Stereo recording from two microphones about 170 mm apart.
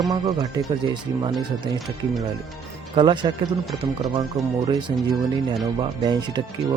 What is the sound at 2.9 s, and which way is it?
Speech, 25° right (ahead or behind).